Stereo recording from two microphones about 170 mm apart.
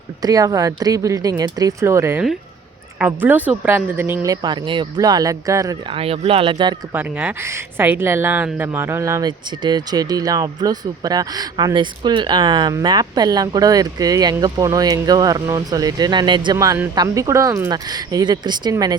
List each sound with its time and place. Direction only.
0.2 s speech: 20° right (ahead or behind)
5.9 s speech: 35° right (ahead or behind)
6.9 s speech: 10° right (ahead or behind)